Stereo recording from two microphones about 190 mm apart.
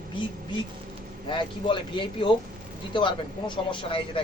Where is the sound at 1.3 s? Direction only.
25° left (ahead or behind).